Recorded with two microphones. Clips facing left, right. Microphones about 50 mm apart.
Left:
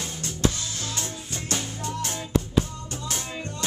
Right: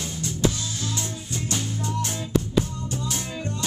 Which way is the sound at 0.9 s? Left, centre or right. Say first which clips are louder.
Right 2 dB; left.